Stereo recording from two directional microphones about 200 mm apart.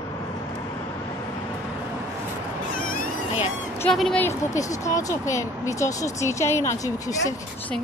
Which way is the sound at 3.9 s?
5° left (ahead or behind).